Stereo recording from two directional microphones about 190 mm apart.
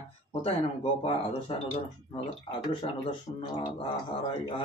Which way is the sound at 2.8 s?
30° left (ahead or behind).